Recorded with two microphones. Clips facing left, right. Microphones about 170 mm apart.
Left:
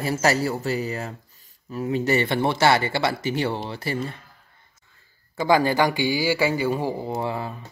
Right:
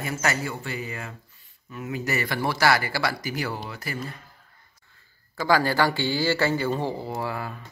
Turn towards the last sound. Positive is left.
turn(degrees=20)  # may be behind; listen again after turning